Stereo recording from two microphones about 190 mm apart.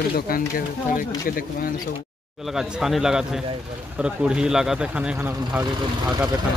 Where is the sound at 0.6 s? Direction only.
45° left (ahead or behind).